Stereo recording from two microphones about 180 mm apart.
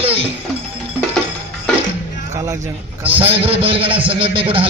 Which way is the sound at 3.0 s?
30° right (ahead or behind).